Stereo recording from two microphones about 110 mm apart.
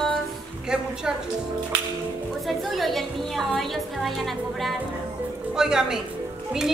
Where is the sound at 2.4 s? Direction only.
Centre (ahead or behind).